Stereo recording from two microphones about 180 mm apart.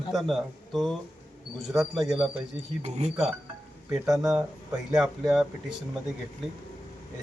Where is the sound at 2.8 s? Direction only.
40° right (ahead or behind).